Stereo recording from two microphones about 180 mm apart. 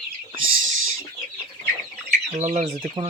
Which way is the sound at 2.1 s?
40° right (ahead or behind).